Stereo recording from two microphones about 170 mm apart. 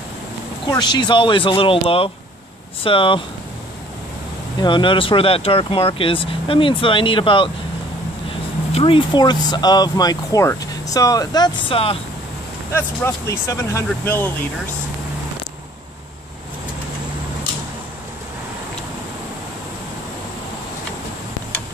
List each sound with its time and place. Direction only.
0.7 s speech: 25° left (ahead or behind)
4.6 s speech: 30° left (ahead or behind)
8.7 s speech: 30° left (ahead or behind)
12.7 s speech: 15° left (ahead or behind)